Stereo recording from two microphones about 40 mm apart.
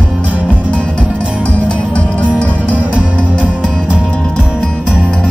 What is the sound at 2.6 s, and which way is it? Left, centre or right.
Music, right.